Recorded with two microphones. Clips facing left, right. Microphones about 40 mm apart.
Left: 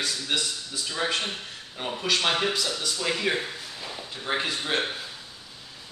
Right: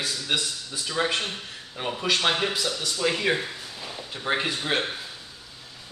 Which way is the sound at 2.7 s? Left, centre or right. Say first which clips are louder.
Right 2 dB; right.